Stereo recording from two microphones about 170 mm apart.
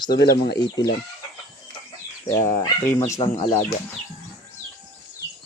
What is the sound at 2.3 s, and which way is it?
Speech, 15° left (ahead or behind).